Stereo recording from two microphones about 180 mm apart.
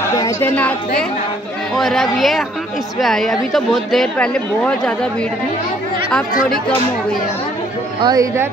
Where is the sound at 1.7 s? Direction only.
Centre (ahead or behind).